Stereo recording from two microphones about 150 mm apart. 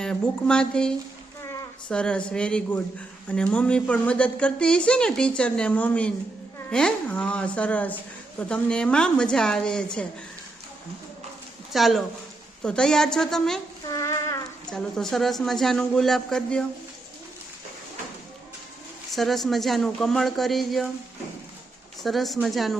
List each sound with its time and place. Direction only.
0.0 s a man's voice: 5° left (ahead or behind)
1.4 s a sound: 20° left (ahead or behind)
1.9 s a woman's voice: 5° left (ahead or behind)
11.7 s a man's voice: centre (ahead or behind)
13.8 s child singing: 25° left (ahead or behind)
14.7 s a man's voice: 5° left (ahead or behind)
19.1 s a man's voice: centre (ahead or behind)
22.0 s a man's voice: centre (ahead or behind)